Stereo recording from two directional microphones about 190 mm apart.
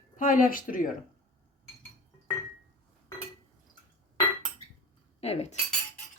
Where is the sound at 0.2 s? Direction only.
45° left (ahead or behind).